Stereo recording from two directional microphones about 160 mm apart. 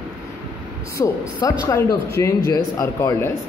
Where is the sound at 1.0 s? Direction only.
30° left (ahead or behind).